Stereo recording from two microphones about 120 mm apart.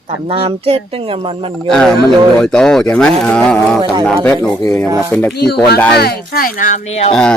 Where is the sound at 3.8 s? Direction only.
40° right (ahead or behind).